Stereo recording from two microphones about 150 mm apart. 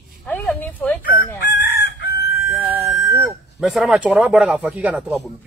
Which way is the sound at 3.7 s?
Centre (ahead or behind).